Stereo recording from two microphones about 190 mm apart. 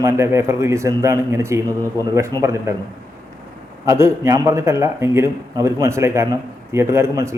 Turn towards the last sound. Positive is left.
turn(degrees=-15)  # may be behind; listen again after turning